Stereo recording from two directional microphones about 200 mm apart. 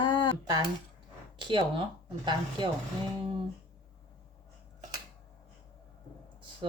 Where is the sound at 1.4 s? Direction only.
25° right (ahead or behind).